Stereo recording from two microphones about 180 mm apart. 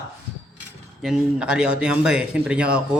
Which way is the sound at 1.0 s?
5° right (ahead or behind).